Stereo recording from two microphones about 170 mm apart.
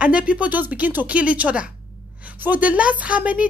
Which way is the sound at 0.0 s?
5° right (ahead or behind).